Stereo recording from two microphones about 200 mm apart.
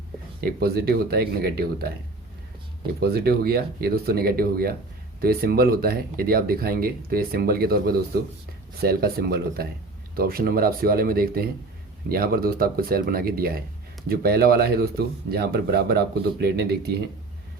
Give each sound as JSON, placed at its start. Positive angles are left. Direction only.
{"t": 0.4, "sound": "speech", "side_deg": -50}
{"t": 3.0, "sound": "speech", "side_deg": -50}